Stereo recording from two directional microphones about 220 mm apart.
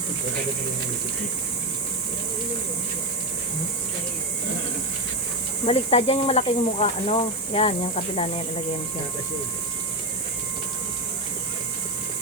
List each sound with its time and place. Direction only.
5.6 s speech: 25° left (ahead or behind)